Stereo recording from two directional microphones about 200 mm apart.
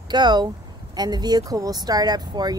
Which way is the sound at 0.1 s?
20° right (ahead or behind).